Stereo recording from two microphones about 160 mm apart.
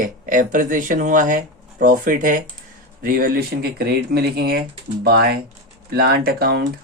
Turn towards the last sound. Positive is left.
turn(degrees=-80)